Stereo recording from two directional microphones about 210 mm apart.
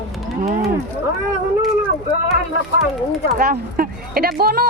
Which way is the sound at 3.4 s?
40° right (ahead or behind).